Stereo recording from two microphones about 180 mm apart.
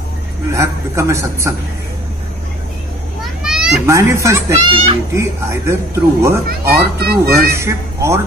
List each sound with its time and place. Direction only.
0.5 s speech: 15° right (ahead or behind)
3.2 s children playing: 5° right (ahead or behind)
3.8 s speech: 15° right (ahead or behind)
4.6 s a child's voice: 30° right (ahead or behind)
5.1 s speech: 15° right (ahead or behind)
6.4 s speech: 60° right (ahead or behind)
7.2 s speech: 15° right (ahead or behind)